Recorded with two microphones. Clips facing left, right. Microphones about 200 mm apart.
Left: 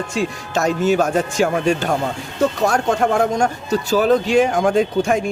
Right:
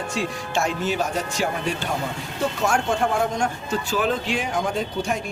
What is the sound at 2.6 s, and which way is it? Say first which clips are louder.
Speech: left 1 dB; 40° left (ahead or behind).